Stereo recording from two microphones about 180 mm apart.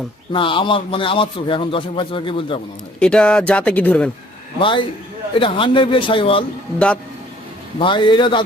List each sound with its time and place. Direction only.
0.3 s a man's voice: 30° left (ahead or behind)
3.0 s speech: 5° left (ahead or behind)
4.6 s a man's voice: 25° left (ahead or behind)
6.7 s speech: 5° left (ahead or behind)
7.8 s a man's voice: 25° left (ahead or behind)